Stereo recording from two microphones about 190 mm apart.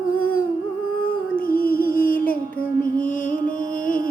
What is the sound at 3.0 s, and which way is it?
Music, 45° left (ahead or behind).